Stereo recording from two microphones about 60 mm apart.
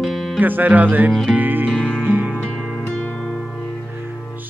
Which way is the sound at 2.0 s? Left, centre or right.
Right.